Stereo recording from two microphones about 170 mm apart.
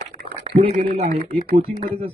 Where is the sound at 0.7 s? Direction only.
60° right (ahead or behind).